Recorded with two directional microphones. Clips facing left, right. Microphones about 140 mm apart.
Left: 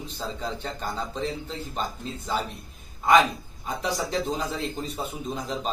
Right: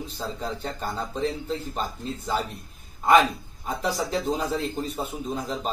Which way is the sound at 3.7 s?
5° right (ahead or behind).